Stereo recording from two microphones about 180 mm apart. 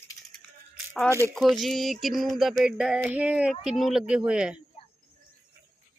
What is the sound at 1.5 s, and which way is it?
Music, centre (ahead or behind).